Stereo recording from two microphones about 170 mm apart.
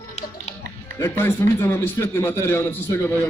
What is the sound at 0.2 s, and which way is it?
Music, 40° left (ahead or behind).